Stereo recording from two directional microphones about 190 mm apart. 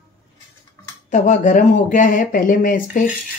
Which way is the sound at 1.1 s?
40° left (ahead or behind).